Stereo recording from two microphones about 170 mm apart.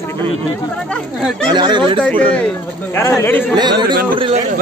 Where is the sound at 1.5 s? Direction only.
25° right (ahead or behind).